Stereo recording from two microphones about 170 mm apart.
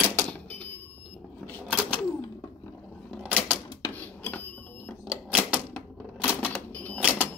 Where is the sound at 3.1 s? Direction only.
5° right (ahead or behind).